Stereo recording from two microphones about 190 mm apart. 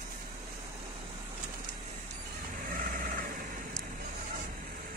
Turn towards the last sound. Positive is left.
turn(degrees=-45)  # may be behind; listen again after turning